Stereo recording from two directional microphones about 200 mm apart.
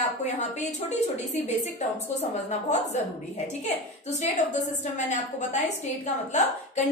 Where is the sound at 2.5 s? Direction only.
35° left (ahead or behind).